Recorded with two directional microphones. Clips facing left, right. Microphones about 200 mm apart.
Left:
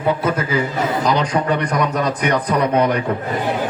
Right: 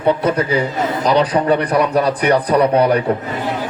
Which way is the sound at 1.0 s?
35° right (ahead or behind).